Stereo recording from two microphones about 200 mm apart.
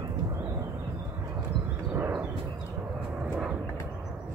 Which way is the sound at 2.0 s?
10° right (ahead or behind).